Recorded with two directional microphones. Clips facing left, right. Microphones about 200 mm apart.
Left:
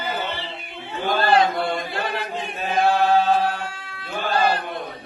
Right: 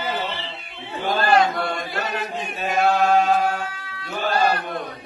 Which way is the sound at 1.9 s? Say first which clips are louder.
Even; 30° left (ahead or behind).